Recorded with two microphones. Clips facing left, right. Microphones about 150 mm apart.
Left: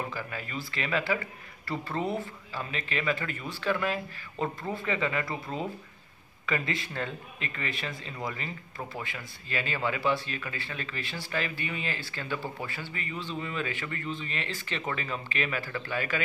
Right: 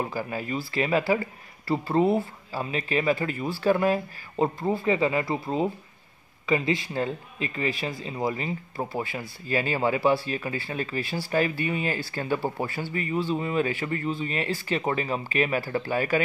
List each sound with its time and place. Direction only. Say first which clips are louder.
0.0 s speech: right 6 dB; 35° right (ahead or behind)